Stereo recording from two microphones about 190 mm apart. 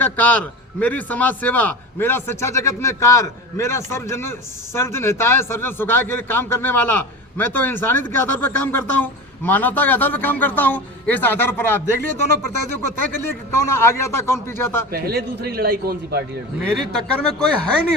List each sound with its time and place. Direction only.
0.0 s a man's voice: 10° left (ahead or behind)
14.9 s a man's voice: 55° right (ahead or behind)
16.9 s speech: 5° left (ahead or behind)